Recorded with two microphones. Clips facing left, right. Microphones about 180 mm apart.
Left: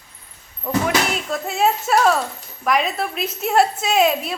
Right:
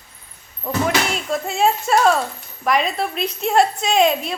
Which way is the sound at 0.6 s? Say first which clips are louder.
Even; centre (ahead or behind).